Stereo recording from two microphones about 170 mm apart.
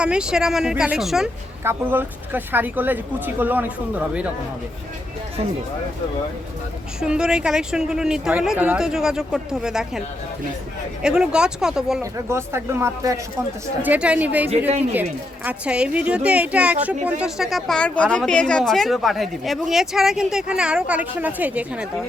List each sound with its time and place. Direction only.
0.0 s speech: 5° right (ahead or behind)
7.0 s speech: 5° right (ahead or behind)
11.0 s speech: 5° right (ahead or behind)
12.1 s speech: 15° right (ahead or behind)